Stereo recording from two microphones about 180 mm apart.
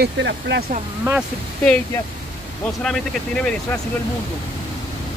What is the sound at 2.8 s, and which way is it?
Speech, 5° left (ahead or behind).